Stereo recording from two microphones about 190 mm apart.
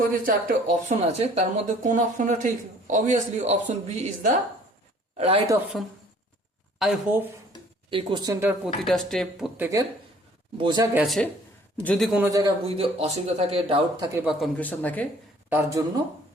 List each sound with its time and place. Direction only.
0.0 s a woman's voice: 45° right (ahead or behind)
5.7 s speech: centre (ahead or behind)
7.9 s speech: 25° right (ahead or behind)
8.8 s speech: centre (ahead or behind)
10.6 s speech: 25° right (ahead or behind)
10.9 s speech: centre (ahead or behind)
12.2 s speech: 15° right (ahead or behind)
12.6 s speech: 30° right (ahead or behind)
14.1 s speech: 10° right (ahead or behind); by 15.0 s 10° left (ahead or behind)
15.4 s speech: 10° right (ahead or behind)